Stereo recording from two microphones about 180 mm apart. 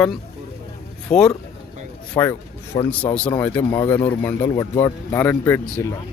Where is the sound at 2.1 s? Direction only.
15° left (ahead or behind).